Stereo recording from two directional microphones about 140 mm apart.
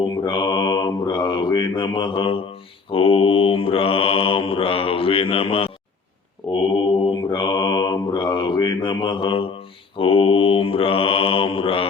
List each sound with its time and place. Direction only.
0.3 s mantra: 30° left (ahead or behind)
6.4 s mantra: 5° left (ahead or behind)
7.3 s mantra: 30° left (ahead or behind)